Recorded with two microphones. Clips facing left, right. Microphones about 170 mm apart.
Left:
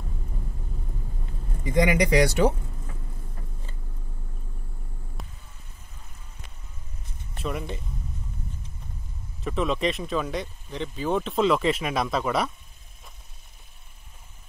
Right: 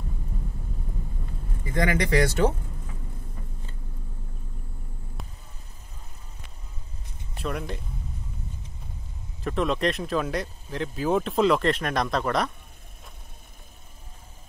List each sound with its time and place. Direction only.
1.6 s speech: 15° left (ahead or behind)
5.2 s a sound: centre (ahead or behind)
7.3 s speech: centre (ahead or behind)
9.4 s speech: centre (ahead or behind)